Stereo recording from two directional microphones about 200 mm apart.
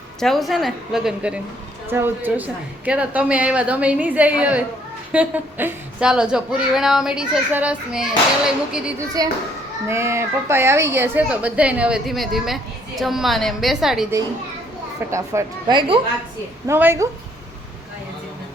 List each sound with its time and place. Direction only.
0.2 s a woman's voice: centre (ahead or behind)
9.2 s a woman's voice: 20° right (ahead or behind); by 14.1 s centre (ahead or behind)
15.1 s a woman's voice: 15° right (ahead or behind)
16.6 s a woman's voice: 10° right (ahead or behind)